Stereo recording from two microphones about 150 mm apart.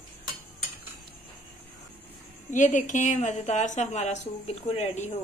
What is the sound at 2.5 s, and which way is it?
A woman's voice, 55° left (ahead or behind).